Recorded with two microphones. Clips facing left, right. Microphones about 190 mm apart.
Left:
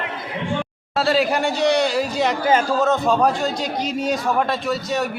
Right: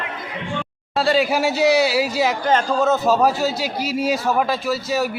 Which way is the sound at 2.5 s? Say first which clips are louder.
Left 1 dB; 10° left (ahead or behind).